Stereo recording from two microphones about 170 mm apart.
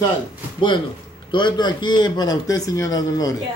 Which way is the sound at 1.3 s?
25° left (ahead or behind).